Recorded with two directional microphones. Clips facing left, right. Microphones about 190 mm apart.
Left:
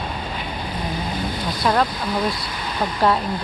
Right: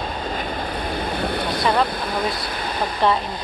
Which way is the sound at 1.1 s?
60° right (ahead or behind).